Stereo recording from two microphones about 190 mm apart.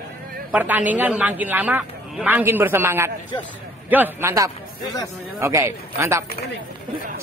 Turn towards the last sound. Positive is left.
turn(degrees=-15)  # may be behind; listen again after turning